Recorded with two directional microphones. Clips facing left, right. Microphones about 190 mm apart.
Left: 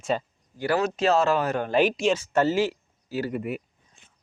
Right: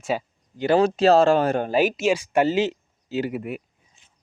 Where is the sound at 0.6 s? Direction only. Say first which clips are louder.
Right 6 dB; 25° right (ahead or behind).